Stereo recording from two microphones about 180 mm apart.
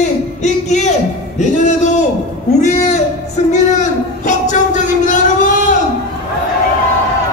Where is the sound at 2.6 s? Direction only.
40° left (ahead or behind).